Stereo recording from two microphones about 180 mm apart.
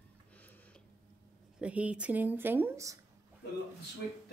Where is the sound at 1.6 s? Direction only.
5° right (ahead or behind).